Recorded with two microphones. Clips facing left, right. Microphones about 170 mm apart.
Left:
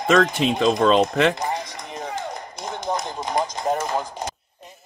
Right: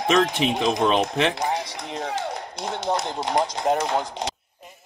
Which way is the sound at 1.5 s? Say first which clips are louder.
Right 1 dB; 65° right (ahead or behind).